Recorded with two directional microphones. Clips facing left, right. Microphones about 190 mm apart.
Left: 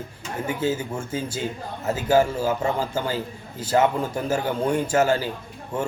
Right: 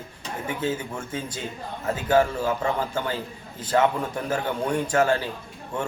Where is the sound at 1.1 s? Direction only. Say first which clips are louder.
Left 3 dB; 5° left (ahead or behind).